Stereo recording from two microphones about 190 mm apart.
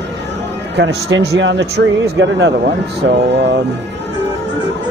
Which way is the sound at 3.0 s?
75° right (ahead or behind).